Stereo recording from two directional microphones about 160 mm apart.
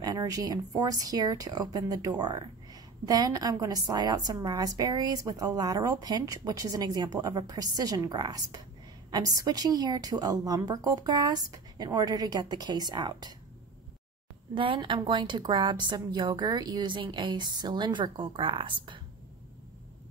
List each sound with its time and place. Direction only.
0.0 s speech: 25° right (ahead or behind)
14.5 s speech: 30° right (ahead or behind)